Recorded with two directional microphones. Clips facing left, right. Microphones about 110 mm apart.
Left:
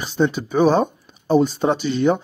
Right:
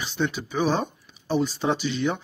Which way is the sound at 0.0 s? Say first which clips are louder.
Left 7 dB; 40° left (ahead or behind).